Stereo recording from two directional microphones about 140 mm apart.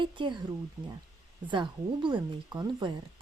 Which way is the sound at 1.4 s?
35° right (ahead or behind).